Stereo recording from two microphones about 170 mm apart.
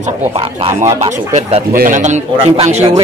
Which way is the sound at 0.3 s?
35° right (ahead or behind).